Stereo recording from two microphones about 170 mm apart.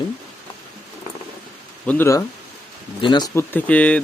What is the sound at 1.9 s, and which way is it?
Speech, 15° left (ahead or behind).